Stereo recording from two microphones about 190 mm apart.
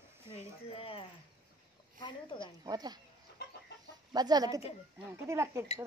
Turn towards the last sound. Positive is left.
turn(degrees=-15)  # may be behind; listen again after turning